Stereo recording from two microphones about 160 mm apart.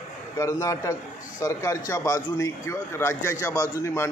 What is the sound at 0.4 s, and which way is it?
A man's voice, 20° left (ahead or behind).